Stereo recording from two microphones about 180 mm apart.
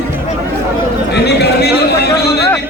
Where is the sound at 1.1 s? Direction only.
65° left (ahead or behind).